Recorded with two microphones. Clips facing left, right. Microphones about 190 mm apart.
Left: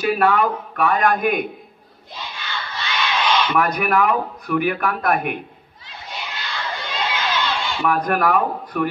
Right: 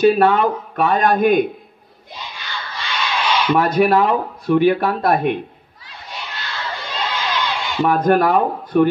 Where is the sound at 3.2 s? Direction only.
10° right (ahead or behind).